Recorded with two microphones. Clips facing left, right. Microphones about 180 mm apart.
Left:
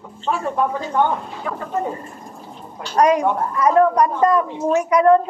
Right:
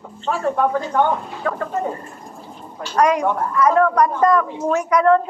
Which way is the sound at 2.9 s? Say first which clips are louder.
Left 1 dB; 20° left (ahead or behind).